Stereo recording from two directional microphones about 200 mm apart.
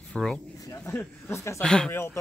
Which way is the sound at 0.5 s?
15° left (ahead or behind).